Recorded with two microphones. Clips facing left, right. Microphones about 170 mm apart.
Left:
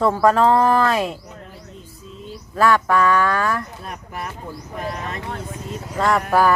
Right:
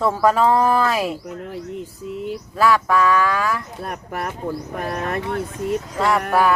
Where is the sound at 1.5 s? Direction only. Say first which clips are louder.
Right 10 dB; 75° right (ahead or behind).